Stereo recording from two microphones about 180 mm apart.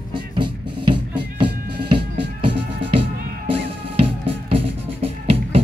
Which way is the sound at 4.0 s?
30° right (ahead or behind).